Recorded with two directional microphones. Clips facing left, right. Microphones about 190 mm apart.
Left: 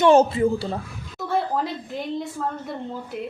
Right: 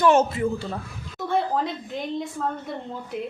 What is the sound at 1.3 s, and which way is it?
Speech, centre (ahead or behind).